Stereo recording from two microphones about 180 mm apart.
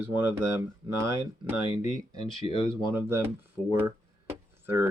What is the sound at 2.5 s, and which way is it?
Speech, 30° left (ahead or behind).